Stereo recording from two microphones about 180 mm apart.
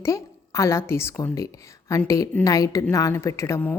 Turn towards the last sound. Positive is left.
turn(degrees=10)  # may be behind; listen again after turning